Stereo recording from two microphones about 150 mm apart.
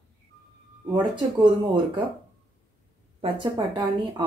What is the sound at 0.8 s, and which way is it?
Speech, 30° right (ahead or behind).